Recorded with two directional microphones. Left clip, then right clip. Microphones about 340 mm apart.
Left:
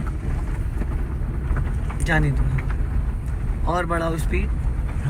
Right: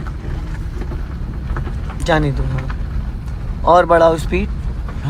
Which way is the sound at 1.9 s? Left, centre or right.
Centre.